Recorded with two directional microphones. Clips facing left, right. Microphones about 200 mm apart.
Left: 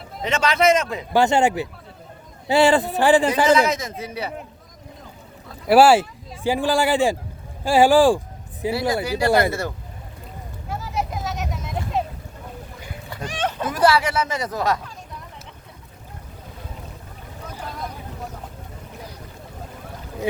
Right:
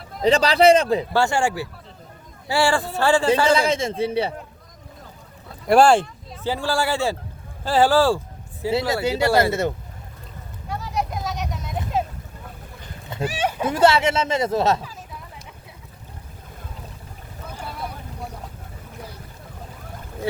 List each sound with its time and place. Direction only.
0.2 s a man's voice: 35° right (ahead or behind)
1.1 s a man's voice: 20° left (ahead or behind)
3.4 s speech: 30° right (ahead or behind)
5.6 s a man's voice: 5° left (ahead or behind)
9.5 s speech: 20° right (ahead or behind)
10.7 s vehicle: centre (ahead or behind)
13.2 s a sound: 10° right (ahead or behind)
13.7 s speech: 25° right (ahead or behind)
17.6 s boat: 10° right (ahead or behind)